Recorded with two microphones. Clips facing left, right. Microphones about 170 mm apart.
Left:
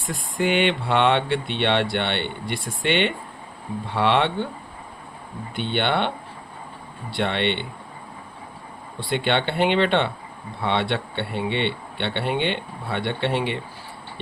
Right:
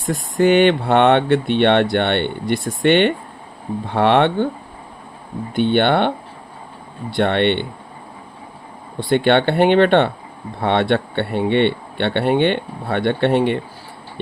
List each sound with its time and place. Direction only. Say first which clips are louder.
0.0 s speech: right 8 dB; 45° right (ahead or behind)
5.5 s speech: right 8 dB; 50° right (ahead or behind)
7.2 s speech: right 7 dB; 55° right (ahead or behind)
9.0 s speech: right 8 dB; 50° right (ahead or behind)